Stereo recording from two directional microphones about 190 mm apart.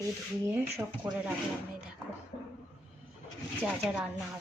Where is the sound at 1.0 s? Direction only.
20° right (ahead or behind).